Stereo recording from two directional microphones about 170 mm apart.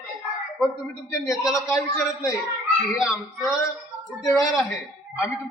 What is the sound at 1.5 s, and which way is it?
Speech, 20° left (ahead or behind).